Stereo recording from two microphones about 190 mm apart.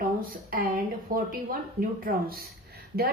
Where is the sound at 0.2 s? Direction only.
50° right (ahead or behind).